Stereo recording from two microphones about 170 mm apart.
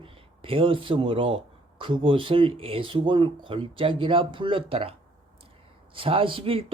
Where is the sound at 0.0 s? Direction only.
30° right (ahead or behind).